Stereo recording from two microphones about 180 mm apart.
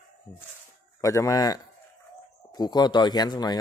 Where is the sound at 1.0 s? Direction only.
15° left (ahead or behind).